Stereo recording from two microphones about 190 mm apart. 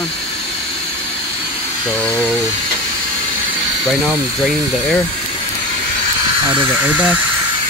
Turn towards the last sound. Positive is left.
turn(degrees=-10)  # may be behind; listen again after turning